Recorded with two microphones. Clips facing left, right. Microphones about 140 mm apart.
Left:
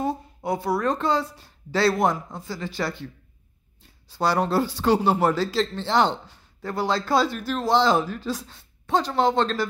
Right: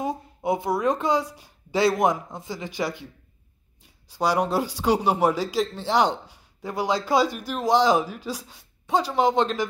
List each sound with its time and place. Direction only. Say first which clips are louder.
0.0 s a woman's voice: even; 15° right (ahead or behind)